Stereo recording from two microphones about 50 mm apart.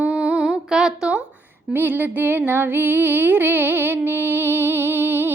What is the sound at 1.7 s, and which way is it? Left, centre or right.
Music, right.